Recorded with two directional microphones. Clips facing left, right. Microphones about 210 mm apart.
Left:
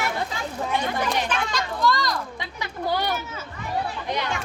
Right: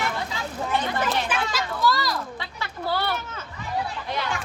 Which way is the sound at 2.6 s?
15° left (ahead or behind).